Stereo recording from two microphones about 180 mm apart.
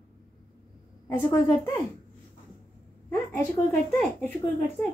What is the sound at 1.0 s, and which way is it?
Speech, 15° left (ahead or behind).